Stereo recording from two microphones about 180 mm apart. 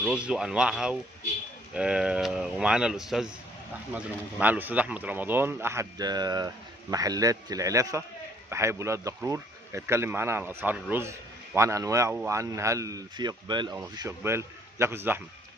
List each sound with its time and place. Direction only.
0.0 s speech: 5° right (ahead or behind)